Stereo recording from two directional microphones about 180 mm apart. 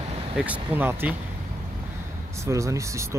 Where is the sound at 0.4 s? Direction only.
10° right (ahead or behind).